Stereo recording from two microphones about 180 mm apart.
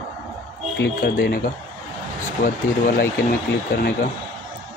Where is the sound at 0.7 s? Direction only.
65° left (ahead or behind).